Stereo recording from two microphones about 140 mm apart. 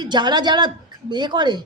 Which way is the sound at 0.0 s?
30° right (ahead or behind).